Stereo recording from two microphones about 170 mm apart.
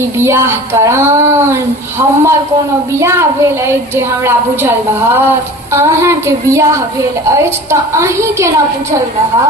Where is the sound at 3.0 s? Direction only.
15° right (ahead or behind).